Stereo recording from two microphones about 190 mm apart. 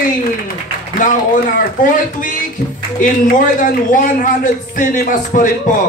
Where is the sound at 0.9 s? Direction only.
45° left (ahead or behind).